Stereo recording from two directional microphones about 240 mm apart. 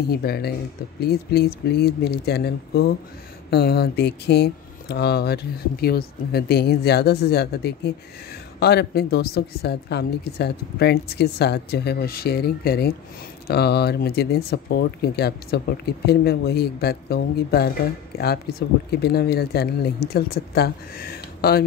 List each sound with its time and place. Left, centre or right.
0.1 s speech: left